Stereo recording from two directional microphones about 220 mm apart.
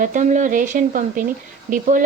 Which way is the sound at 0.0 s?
35° right (ahead or behind).